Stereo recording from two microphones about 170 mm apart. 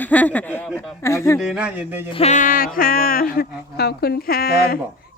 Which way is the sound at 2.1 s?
40° left (ahead or behind).